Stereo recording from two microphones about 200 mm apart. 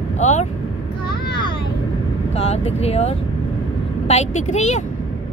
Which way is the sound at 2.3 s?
30° left (ahead or behind).